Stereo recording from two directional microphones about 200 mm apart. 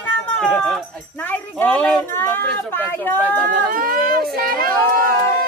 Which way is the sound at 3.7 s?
45° right (ahead or behind).